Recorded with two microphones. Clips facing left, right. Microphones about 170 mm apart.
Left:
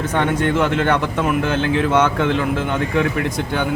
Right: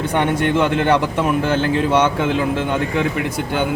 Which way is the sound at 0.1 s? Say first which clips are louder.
Right 1 dB; 15° right (ahead or behind).